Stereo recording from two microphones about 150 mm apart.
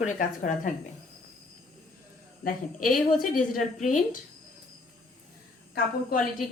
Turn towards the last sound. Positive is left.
turn(degrees=80)